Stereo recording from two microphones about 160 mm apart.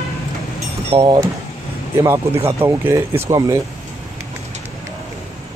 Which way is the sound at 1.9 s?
15° right (ahead or behind).